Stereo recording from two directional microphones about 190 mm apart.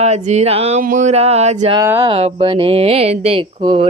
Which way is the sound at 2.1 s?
30° right (ahead or behind).